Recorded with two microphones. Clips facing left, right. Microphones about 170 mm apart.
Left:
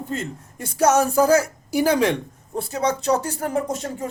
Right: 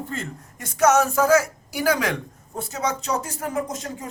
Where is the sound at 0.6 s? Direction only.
30° left (ahead or behind).